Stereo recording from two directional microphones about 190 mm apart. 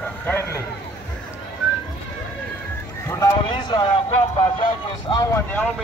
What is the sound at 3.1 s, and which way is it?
Speech, 20° left (ahead or behind).